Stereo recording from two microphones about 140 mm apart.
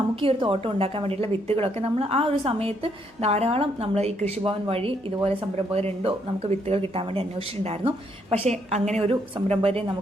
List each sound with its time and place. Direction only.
0.2 s a woman's voice: 40° right (ahead or behind)